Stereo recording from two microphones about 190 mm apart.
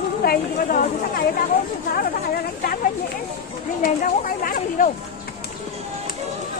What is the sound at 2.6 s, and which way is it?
Speech, 50° left (ahead or behind).